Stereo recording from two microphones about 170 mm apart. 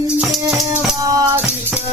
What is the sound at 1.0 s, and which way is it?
Music, 20° right (ahead or behind).